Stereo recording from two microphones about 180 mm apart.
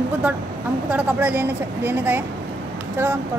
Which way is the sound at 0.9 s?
5° right (ahead or behind).